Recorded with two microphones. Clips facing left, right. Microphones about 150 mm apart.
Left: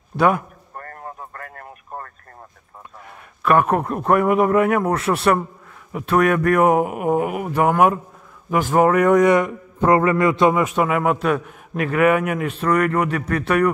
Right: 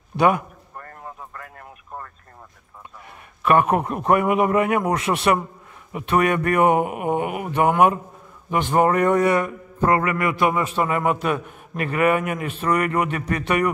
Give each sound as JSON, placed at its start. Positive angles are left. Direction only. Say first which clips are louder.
{"t": 0.7, "sound": "radio", "louder": "left 3 dB", "side_deg": 50}
{"t": 3.4, "sound": "a man's voice", "louder": "left 1 dB", "side_deg": -5}
{"t": 10.8, "sound": "a man's voice", "louder": "left 2 dB", "side_deg": 5}